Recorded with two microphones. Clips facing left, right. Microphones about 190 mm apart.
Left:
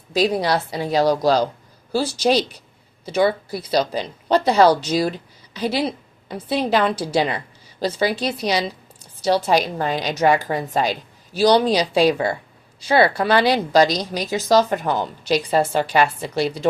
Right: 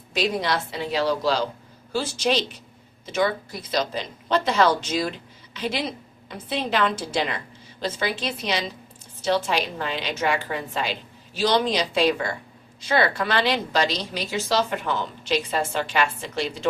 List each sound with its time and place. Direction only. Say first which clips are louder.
0.1 s a woman's voice: left 5 dB; 35° left (ahead or behind)